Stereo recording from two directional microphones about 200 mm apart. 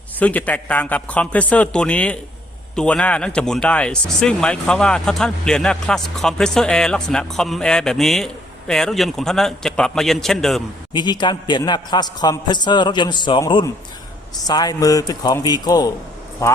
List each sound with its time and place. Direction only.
0.2 s a man's voice: 5° left (ahead or behind)
10.9 s a man's voice: 20° left (ahead or behind)